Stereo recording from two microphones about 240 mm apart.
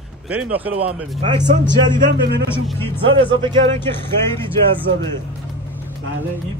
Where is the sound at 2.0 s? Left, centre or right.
Right.